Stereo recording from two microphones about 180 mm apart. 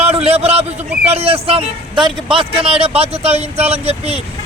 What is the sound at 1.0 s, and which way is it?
A man's voice, 35° right (ahead or behind).